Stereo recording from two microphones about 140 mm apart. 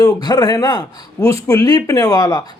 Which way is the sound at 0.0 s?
30° left (ahead or behind).